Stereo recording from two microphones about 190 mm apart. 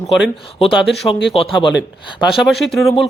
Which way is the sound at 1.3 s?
30° left (ahead or behind).